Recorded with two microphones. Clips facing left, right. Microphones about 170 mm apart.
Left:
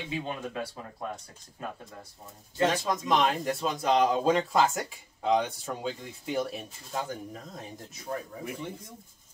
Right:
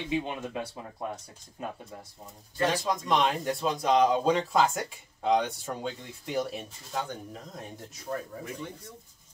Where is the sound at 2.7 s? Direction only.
Centre (ahead or behind).